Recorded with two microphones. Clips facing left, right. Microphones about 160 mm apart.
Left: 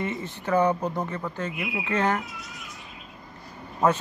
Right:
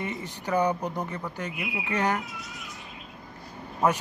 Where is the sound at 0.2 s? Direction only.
15° right (ahead or behind).